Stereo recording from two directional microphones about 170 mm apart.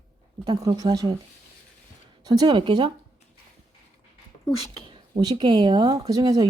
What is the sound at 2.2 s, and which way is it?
Speech, 25° right (ahead or behind).